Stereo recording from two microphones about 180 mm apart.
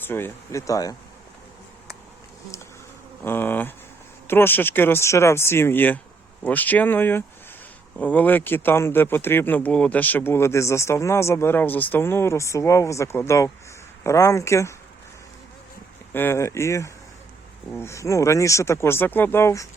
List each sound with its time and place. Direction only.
0.0 s speech: 10° left (ahead or behind)
3.2 s speech: 10° left (ahead or behind)
16.1 s speech: 15° left (ahead or behind)